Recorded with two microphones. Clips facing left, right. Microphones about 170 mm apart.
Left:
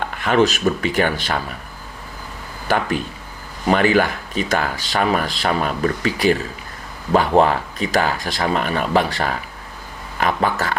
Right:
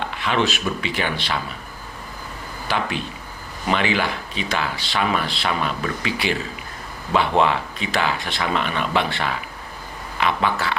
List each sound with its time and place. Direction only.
0.0 s speech: 45° left (ahead or behind)
2.6 s speech: 45° left (ahead or behind)